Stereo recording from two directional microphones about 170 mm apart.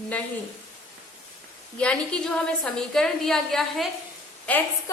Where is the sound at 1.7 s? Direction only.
5° left (ahead or behind).